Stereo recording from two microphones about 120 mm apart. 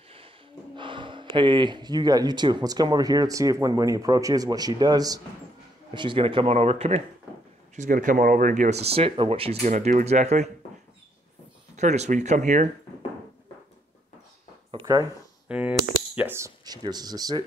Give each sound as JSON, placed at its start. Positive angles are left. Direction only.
{"t": 0.7, "sound": "speech", "side_deg": -45}
{"t": 5.9, "sound": "speech", "side_deg": -45}
{"t": 7.7, "sound": "speech", "side_deg": -90}
{"t": 11.7, "sound": "speech", "side_deg": -70}
{"t": 14.7, "sound": "a sound", "side_deg": -45}
{"t": 15.4, "sound": "a sound", "side_deg": -10}
{"t": 16.2, "sound": "speech", "side_deg": -20}
{"t": 16.6, "sound": "speech", "side_deg": -35}